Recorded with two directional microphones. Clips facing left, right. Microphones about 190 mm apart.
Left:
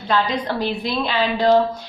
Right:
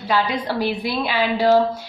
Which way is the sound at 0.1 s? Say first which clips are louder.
Even; 10° right (ahead or behind).